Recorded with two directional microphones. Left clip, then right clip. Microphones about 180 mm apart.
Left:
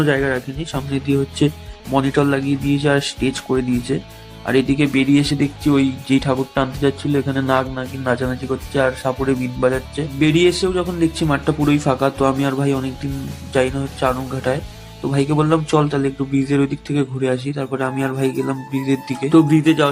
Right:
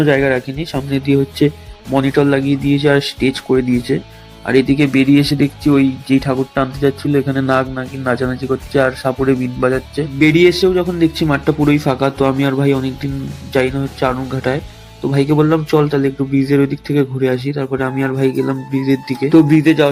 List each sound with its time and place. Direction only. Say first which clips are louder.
0.0 s speech: right 5 dB; 20° right (ahead or behind)
0.8 s speech: right 4 dB; 10° right (ahead or behind)
2.1 s speech: right 4 dB; 5° right (ahead or behind)